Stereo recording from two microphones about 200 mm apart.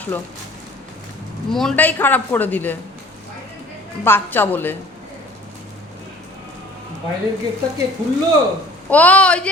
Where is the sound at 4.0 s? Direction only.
10° left (ahead or behind).